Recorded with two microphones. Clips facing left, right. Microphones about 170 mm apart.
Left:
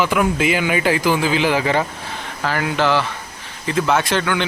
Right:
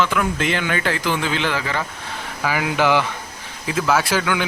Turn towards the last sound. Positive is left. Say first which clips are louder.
# left 1 dB
turn(degrees=-5)  # may be behind; listen again after turning